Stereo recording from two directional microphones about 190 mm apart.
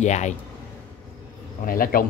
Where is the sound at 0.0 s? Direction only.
40° left (ahead or behind).